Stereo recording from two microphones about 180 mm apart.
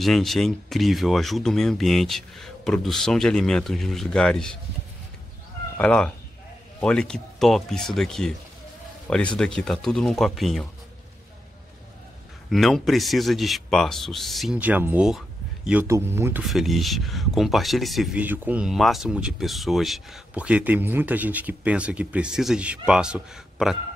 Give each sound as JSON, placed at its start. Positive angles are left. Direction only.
{"t": 0.0, "sound": "speech", "side_deg": 0}
{"t": 5.8, "sound": "speech", "side_deg": 5}
{"t": 9.4, "sound": "speech", "side_deg": 5}
{"t": 12.4, "sound": "speech", "side_deg": 0}
{"t": 16.4, "sound": "speech", "side_deg": 0}